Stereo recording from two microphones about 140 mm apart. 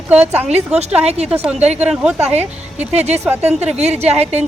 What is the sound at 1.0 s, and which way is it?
Speech, 50° right (ahead or behind).